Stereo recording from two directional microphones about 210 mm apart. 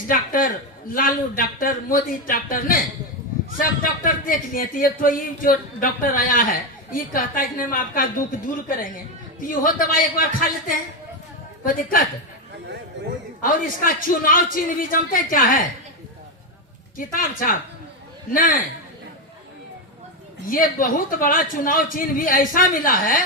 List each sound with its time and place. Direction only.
0.1 s speech: 40° left (ahead or behind)
13.4 s speech: 40° left (ahead or behind)
17.1 s speech: 40° left (ahead or behind)
20.4 s speech: 40° left (ahead or behind)